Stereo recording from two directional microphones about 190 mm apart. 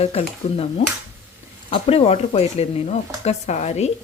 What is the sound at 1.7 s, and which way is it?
Speech, 30° left (ahead or behind).